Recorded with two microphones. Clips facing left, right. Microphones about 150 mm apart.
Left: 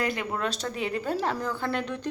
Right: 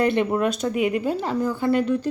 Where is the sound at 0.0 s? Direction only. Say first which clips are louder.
Right 9 dB; 25° right (ahead or behind).